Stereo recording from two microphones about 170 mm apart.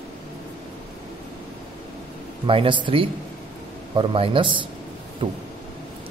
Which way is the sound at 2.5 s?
30° right (ahead or behind).